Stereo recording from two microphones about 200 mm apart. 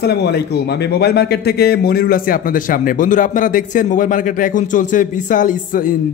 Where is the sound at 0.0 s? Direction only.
55° left (ahead or behind).